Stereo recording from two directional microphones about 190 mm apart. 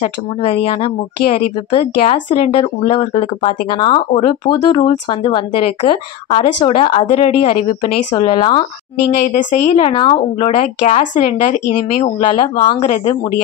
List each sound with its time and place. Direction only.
0.0 s a woman's voice: 30° left (ahead or behind)